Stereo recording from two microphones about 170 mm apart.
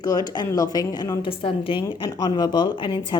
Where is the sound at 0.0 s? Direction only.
20° left (ahead or behind).